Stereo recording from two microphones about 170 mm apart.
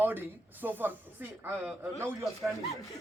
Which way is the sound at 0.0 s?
10° right (ahead or behind).